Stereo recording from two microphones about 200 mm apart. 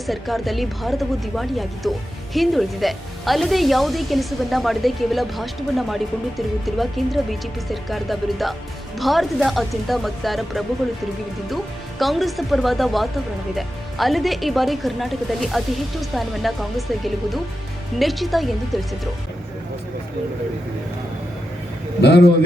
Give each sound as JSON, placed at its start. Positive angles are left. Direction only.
{"t": 0.1, "sound": "speech", "side_deg": 0}
{"t": 22.0, "sound": "a man's voice", "side_deg": 55}